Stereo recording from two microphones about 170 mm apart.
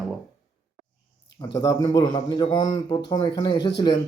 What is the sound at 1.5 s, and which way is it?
A man's voice, 20° left (ahead or behind).